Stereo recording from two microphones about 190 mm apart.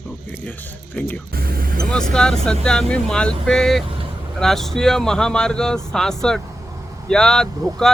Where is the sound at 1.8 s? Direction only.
5° left (ahead or behind).